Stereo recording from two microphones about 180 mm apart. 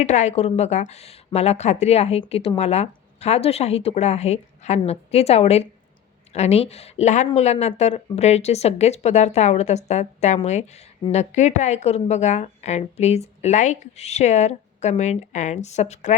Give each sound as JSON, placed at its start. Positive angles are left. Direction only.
{"t": 0.0, "sound": "speech", "side_deg": 40}